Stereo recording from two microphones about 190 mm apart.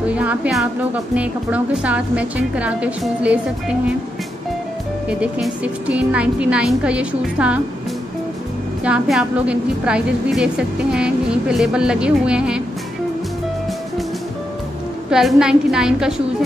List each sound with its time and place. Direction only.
0.0 s a woman's voice: 5° right (ahead or behind)
5.2 s a woman's voice: 5° right (ahead or behind)
8.8 s a woman's voice: 5° right (ahead or behind)
15.0 s a woman's voice: 5° right (ahead or behind)